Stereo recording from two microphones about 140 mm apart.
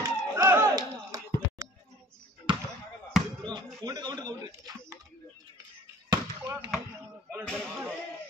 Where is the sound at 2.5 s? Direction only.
35° right (ahead or behind).